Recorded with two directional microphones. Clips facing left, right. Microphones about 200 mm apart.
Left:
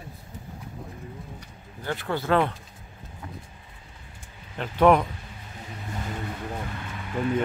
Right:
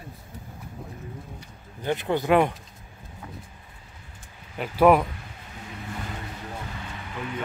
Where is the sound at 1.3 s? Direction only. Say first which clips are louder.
Even; 20° right (ahead or behind).